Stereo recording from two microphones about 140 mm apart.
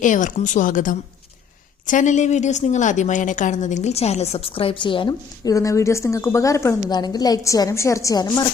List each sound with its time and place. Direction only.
0.0 s a woman's voice: 65° left (ahead or behind); by 5.1 s 35° left (ahead or behind)
5.5 s a woman's voice: 25° left (ahead or behind)